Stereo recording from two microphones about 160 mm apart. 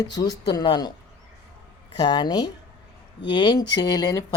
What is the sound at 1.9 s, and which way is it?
Speech, 25° left (ahead or behind).